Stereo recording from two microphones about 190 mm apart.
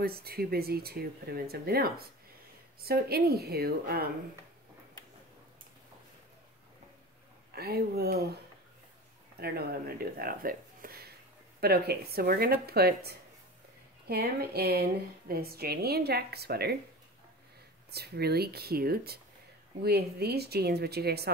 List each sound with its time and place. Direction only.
0.0 s speech: 55° right (ahead or behind)
7.5 s speech: 55° right (ahead or behind)
9.4 s speech: 55° right (ahead or behind)
17.9 s speech: 60° right (ahead or behind)